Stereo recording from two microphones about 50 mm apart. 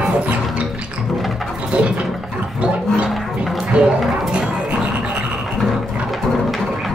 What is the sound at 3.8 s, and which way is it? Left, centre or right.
Music, centre.